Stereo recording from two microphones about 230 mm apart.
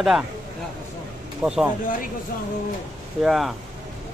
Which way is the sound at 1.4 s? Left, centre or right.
Centre.